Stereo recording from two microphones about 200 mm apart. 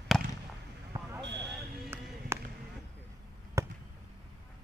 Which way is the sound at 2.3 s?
15° right (ahead or behind).